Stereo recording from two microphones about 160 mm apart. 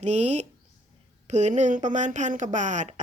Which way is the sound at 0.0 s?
45° right (ahead or behind).